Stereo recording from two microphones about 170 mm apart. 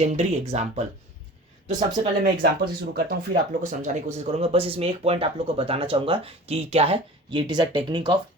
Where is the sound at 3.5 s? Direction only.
50° right (ahead or behind).